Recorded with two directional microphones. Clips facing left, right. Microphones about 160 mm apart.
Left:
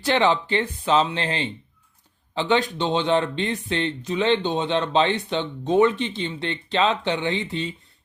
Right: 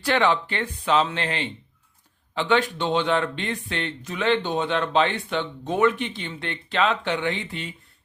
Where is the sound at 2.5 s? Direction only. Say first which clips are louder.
Left 1 dB; 20° left (ahead or behind).